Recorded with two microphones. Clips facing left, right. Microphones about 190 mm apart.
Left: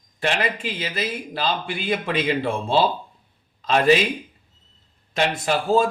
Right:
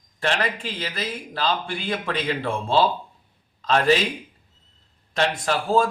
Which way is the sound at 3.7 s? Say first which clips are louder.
Left 2 dB; 15° left (ahead or behind).